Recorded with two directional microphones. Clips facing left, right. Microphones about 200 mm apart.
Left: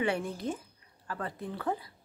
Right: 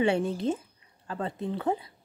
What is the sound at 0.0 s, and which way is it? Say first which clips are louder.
Speech: right 6 dB; 25° right (ahead or behind).